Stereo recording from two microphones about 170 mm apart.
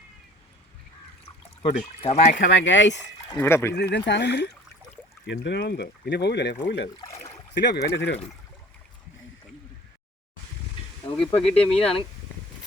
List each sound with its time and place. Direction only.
1.6 s speech: 35° left (ahead or behind)
2.4 s speech: 90° left
3.3 s speech: 15° left (ahead or behind)
3.8 s speech: 80° left
11.4 s speech: 35° left (ahead or behind)